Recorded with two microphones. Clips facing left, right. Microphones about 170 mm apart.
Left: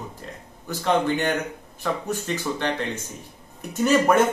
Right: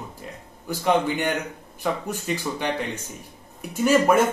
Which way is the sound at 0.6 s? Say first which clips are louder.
Even; 10° right (ahead or behind).